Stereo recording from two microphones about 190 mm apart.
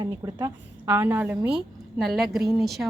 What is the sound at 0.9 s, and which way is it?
A woman's voice, 10° right (ahead or behind).